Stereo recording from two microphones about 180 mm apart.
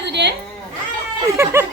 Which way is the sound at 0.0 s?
70° right (ahead or behind).